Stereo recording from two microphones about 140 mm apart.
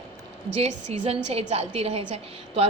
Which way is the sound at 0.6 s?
50° right (ahead or behind).